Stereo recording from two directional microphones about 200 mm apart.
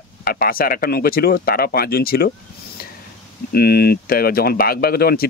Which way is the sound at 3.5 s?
50° left (ahead or behind).